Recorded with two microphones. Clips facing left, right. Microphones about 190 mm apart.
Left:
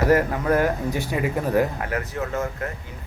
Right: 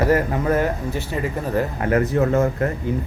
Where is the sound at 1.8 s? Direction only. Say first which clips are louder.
Right 9 dB; 40° right (ahead or behind).